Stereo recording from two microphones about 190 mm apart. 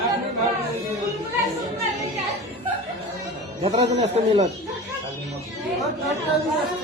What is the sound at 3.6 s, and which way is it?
Speech, 35° right (ahead or behind).